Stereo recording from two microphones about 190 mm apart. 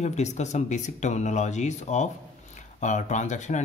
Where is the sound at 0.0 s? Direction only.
35° left (ahead or behind).